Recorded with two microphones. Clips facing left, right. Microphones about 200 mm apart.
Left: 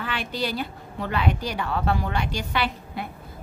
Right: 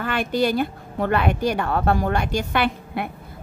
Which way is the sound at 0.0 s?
50° right (ahead or behind).